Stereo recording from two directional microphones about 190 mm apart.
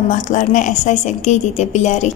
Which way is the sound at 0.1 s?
40° left (ahead or behind).